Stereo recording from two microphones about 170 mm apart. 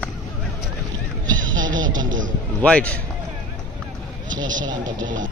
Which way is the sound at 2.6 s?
5° left (ahead or behind).